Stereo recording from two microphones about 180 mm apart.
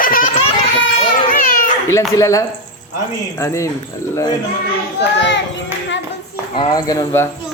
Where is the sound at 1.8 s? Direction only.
20° left (ahead or behind).